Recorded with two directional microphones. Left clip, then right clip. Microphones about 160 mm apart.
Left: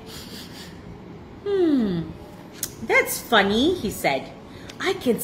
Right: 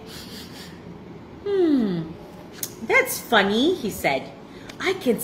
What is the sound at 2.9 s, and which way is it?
A woman's voice, 20° left (ahead or behind).